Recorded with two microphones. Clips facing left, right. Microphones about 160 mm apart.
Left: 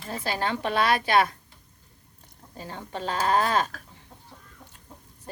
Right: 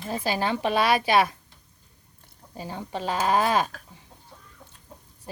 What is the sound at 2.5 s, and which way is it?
A woman's voice, 15° right (ahead or behind).